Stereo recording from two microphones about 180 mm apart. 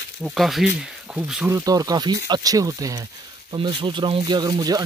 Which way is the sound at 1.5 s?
20° right (ahead or behind).